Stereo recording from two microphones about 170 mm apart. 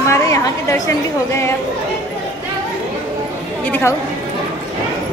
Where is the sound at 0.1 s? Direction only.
20° left (ahead or behind).